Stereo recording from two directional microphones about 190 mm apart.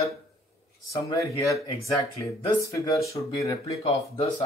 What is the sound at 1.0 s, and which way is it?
Speech, 15° left (ahead or behind).